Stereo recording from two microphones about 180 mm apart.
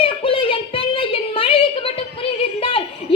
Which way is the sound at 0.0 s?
30° left (ahead or behind).